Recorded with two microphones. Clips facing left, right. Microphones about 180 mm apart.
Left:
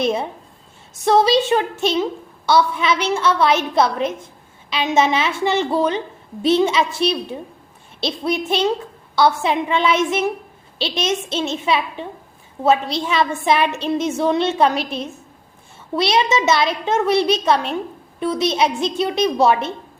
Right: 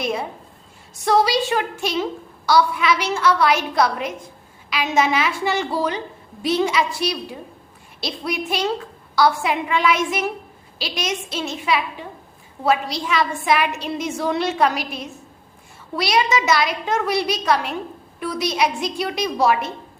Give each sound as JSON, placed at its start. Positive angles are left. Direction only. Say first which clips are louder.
{"t": 0.0, "sound": "a woman's voice", "louder": "left 4 dB", "side_deg": 25}